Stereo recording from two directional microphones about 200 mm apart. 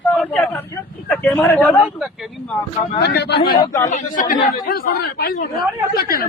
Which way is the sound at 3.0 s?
55° left (ahead or behind).